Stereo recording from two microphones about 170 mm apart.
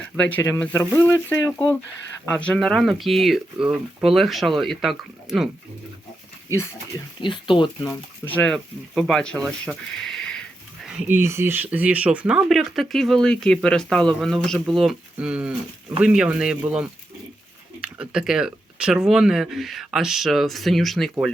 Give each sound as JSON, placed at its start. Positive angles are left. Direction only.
{"t": 0.2, "sound": "speech", "side_deg": 10}
{"t": 7.2, "sound": "speech", "side_deg": 30}
{"t": 7.9, "sound": "speech", "side_deg": 10}
{"t": 10.8, "sound": "speech", "side_deg": -10}